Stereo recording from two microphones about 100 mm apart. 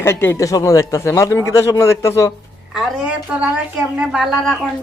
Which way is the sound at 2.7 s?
10° right (ahead or behind).